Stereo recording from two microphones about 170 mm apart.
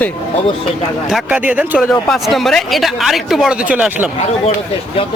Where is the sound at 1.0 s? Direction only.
5° right (ahead or behind).